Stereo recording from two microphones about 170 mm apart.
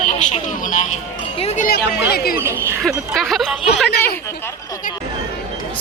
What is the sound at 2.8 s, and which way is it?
Speech, centre (ahead or behind).